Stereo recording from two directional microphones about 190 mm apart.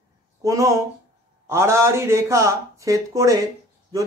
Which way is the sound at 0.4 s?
15° right (ahead or behind).